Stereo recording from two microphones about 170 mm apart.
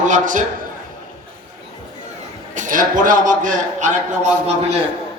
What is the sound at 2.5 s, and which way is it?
A man's voice, 50° right (ahead or behind).